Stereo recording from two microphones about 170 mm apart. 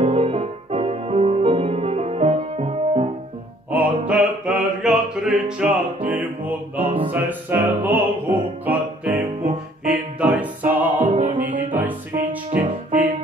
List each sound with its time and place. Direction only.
0.0 s music: 35° right (ahead or behind)
4.2 s music: centre (ahead or behind)
9.1 s music: 55° right (ahead or behind)
10.2 s music: 10° right (ahead or behind)
12.4 s music: 40° right (ahead or behind)